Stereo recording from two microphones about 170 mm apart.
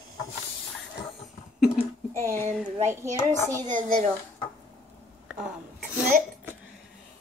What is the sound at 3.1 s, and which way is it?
Speech, 15° left (ahead or behind).